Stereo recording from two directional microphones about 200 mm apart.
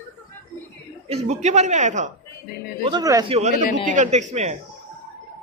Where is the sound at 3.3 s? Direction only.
35° right (ahead or behind).